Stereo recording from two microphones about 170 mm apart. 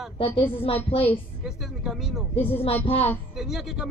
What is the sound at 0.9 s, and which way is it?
Speech, 35° left (ahead or behind).